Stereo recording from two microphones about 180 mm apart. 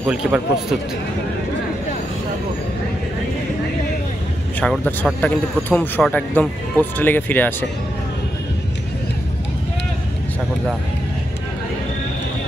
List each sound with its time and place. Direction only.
0.0 s a man's voice: 10° right (ahead or behind)
4.6 s speech: 5° left (ahead or behind)